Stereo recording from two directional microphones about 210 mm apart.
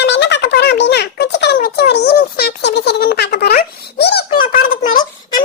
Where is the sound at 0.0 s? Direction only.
55° left (ahead or behind).